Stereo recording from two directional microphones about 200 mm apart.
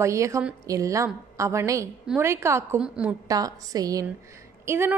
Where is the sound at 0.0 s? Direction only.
15° right (ahead or behind).